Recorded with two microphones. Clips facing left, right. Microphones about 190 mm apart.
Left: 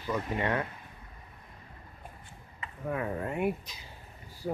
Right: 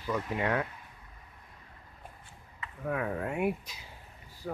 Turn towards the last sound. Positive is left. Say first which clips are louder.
# left 4 dB
turn(degrees=20)  # may be behind; listen again after turning